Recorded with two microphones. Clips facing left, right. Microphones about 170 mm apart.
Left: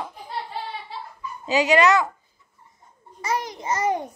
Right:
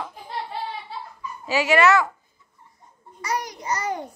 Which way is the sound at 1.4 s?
20° left (ahead or behind).